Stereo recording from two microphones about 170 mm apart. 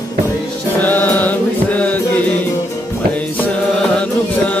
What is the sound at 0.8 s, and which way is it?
Music, 10° left (ahead or behind).